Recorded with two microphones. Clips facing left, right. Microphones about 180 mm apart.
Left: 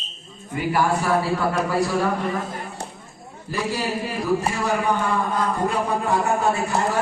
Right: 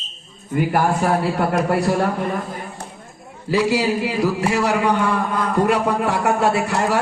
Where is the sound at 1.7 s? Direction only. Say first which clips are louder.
Right 3 dB; 65° right (ahead or behind).